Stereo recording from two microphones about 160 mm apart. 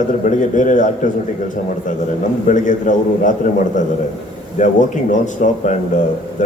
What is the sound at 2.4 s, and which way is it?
A man's voice, 50° left (ahead or behind).